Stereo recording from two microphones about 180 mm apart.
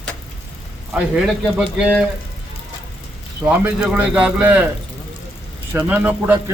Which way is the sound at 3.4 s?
10° right (ahead or behind).